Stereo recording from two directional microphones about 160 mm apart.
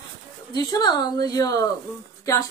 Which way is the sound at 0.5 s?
25° left (ahead or behind).